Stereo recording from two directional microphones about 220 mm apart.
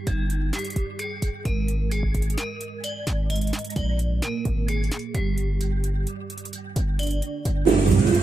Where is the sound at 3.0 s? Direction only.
Centre (ahead or behind).